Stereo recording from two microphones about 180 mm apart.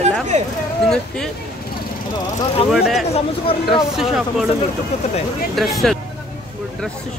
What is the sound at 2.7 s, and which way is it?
Speech, centre (ahead or behind).